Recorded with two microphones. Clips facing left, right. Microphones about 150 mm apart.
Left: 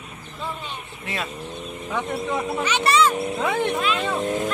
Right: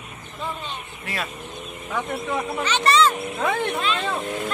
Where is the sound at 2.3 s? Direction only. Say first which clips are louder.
Even; 10° left (ahead or behind).